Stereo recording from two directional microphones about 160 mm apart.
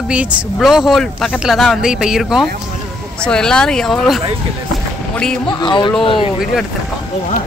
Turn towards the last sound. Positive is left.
turn(degrees=35)  # may be behind; listen again after turning